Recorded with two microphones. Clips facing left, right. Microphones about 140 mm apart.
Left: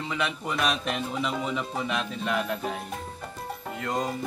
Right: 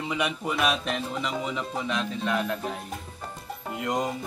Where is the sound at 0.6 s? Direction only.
Centre (ahead or behind).